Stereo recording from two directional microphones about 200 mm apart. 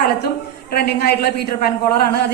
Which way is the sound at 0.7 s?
50° left (ahead or behind).